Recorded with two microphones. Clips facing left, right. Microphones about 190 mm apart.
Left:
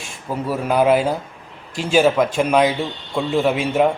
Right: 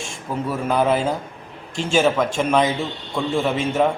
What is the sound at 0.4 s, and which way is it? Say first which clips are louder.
A man's voice: left 3 dB; 10° left (ahead or behind).